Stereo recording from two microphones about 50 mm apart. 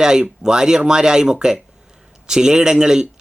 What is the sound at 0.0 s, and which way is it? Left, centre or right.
Speech, centre.